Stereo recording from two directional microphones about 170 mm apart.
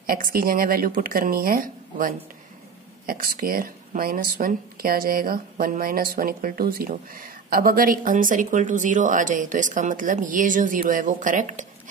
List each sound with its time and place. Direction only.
0.0 s speech: 60° right (ahead or behind)